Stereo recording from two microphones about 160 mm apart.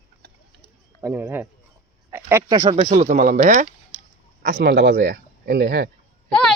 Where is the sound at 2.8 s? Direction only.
50° right (ahead or behind).